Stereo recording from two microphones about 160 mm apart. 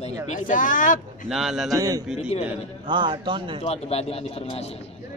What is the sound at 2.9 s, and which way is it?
Speech, 30° right (ahead or behind).